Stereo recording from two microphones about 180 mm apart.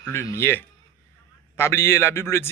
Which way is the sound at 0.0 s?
15° left (ahead or behind).